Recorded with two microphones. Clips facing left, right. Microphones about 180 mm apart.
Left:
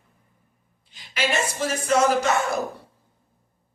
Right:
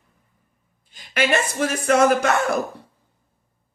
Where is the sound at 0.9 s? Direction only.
50° right (ahead or behind).